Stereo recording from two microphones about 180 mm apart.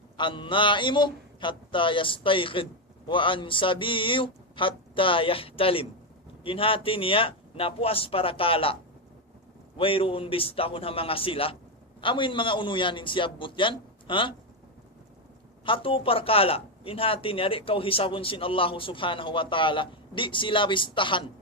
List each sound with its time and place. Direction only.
0.2 s a man's voice: 25° left (ahead or behind)
9.7 s a man's voice: 30° left (ahead or behind)
15.6 s a man's voice: 30° left (ahead or behind)